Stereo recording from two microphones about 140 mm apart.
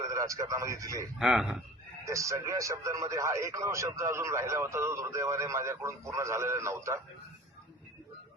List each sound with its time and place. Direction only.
0.0 s a man's voice: 20° right (ahead or behind)
1.2 s speech: centre (ahead or behind)
2.0 s speech: 20° right (ahead or behind)